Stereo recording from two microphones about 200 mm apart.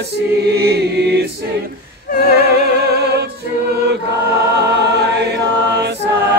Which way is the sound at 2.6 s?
55° right (ahead or behind).